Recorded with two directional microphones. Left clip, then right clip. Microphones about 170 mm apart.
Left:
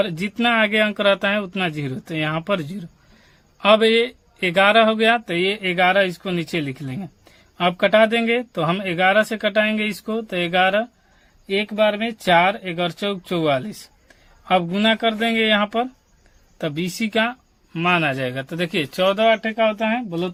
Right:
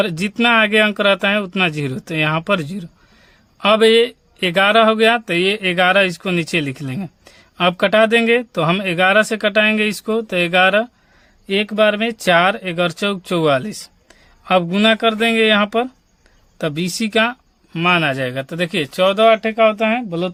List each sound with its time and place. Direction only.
0.0 s speech: 40° right (ahead or behind)